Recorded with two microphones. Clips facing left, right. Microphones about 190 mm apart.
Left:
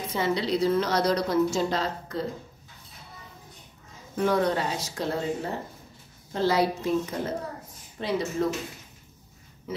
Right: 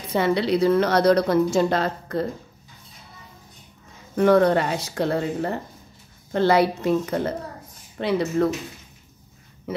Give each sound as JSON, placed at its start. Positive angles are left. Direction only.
{"t": 0.1, "sound": "a woman's voice", "side_deg": -65}
{"t": 4.2, "sound": "a woman's voice", "side_deg": -60}
{"t": 9.7, "sound": "a woman's voice", "side_deg": -60}